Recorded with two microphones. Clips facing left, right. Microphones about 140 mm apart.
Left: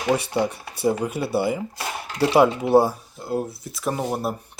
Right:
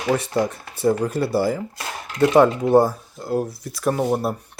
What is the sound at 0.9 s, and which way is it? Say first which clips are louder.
Speech: right 3 dB; 5° left (ahead or behind).